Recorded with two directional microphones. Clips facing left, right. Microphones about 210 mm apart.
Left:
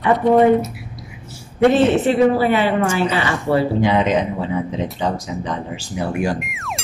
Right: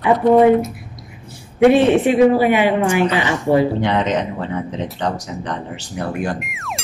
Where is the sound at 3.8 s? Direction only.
10° left (ahead or behind).